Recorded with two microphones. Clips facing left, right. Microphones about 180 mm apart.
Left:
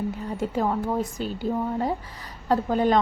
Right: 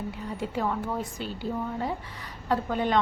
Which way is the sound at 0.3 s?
40° left (ahead or behind).